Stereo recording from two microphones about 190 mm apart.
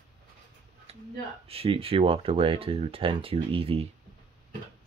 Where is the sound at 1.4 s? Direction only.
30° right (ahead or behind).